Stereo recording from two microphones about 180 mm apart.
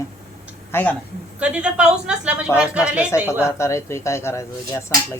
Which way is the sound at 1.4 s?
5° right (ahead or behind).